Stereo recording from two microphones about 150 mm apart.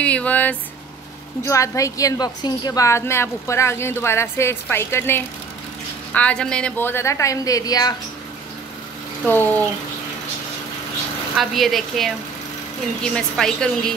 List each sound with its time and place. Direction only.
0.0 s a woman's voice: 10° left (ahead or behind)
1.4 s a woman's voice: 20° left (ahead or behind)
9.2 s a woman's voice: 10° left (ahead or behind)
11.3 s a woman's voice: centre (ahead or behind)
13.1 s a woman's voice: 5° left (ahead or behind)